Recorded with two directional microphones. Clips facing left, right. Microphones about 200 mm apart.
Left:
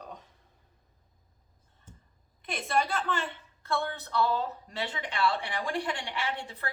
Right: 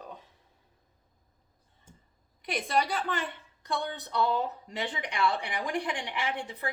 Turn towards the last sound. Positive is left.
turn(degrees=-15)  # may be behind; listen again after turning